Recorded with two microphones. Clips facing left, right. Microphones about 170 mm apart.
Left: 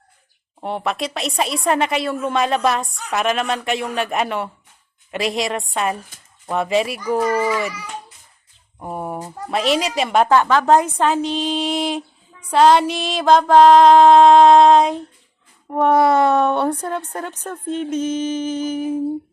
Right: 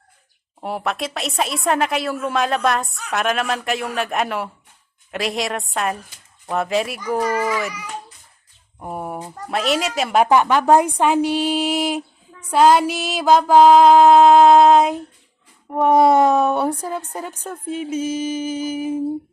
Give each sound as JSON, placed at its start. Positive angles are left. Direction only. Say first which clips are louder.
{"t": 0.6, "sound": "a woman's voice", "louder": "left 1 dB", "side_deg": 0}
{"t": 8.8, "sound": "a woman's voice", "louder": "left 1 dB", "side_deg": -5}
{"t": 10.2, "sound": "a woman's voice", "louder": "right 1 dB", "side_deg": -15}
{"t": 15.9, "sound": "speech", "louder": "right 1 dB", "side_deg": -20}
{"t": 16.2, "sound": "a woman's voice", "louder": "even", "side_deg": -10}